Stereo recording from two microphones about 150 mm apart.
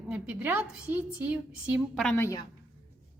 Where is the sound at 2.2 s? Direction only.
20° left (ahead or behind).